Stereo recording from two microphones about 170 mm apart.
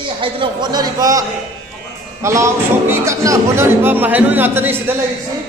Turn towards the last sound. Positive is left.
turn(degrees=-15)  # may be behind; listen again after turning